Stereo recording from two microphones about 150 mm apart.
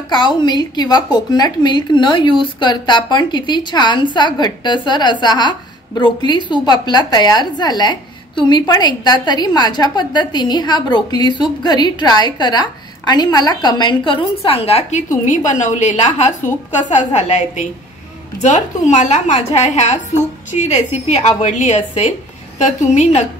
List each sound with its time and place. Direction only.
0.1 s a woman's voice: 30° left (ahead or behind); by 23.2 s 50° left (ahead or behind)